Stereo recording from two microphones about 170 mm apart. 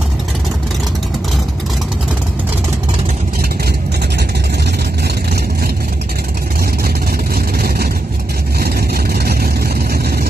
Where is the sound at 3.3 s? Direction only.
65° right (ahead or behind).